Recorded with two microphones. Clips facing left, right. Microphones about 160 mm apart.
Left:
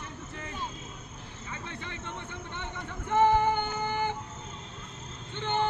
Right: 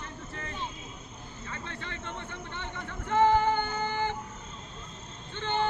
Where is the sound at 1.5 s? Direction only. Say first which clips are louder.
Even; 15° left (ahead or behind).